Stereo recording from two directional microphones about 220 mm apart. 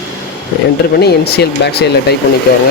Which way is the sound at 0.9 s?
45° left (ahead or behind).